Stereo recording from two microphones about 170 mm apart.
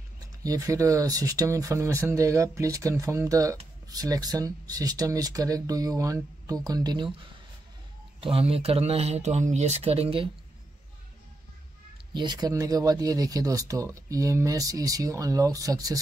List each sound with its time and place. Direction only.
0.4 s speech: 20° right (ahead or behind)
8.2 s speech: 35° right (ahead or behind)
12.1 s speech: 25° right (ahead or behind)